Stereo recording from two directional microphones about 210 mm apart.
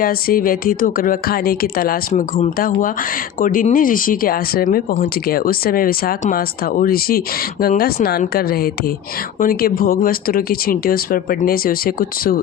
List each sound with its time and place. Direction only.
0.0 s speech: 45° left (ahead or behind)